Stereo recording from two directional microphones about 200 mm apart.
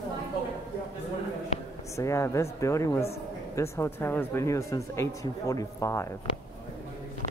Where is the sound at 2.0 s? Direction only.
15° left (ahead or behind).